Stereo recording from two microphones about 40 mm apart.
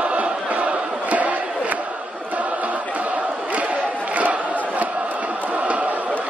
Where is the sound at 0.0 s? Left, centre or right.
Right.